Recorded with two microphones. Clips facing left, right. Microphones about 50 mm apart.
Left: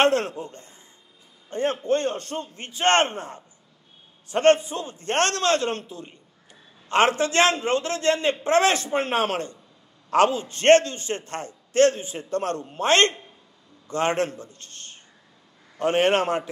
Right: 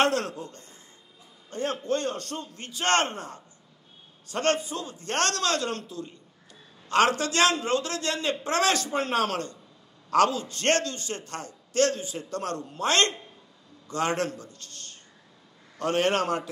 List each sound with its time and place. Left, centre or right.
0.0 s a man's voice: left